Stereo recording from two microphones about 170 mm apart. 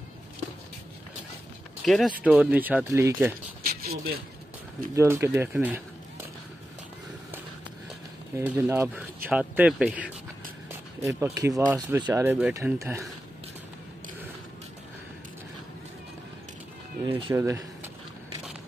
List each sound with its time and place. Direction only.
1.9 s speech: centre (ahead or behind)
3.6 s a sound: 60° right (ahead or behind)
4.9 s speech: 15° right (ahead or behind)
8.4 s speech: 15° right (ahead or behind)
11.0 s speech: 20° right (ahead or behind)
17.0 s speech: 30° right (ahead or behind)
17.3 s speech: 15° right (ahead or behind)